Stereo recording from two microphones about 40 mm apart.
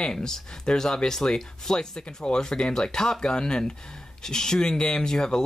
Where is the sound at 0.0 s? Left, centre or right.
Centre.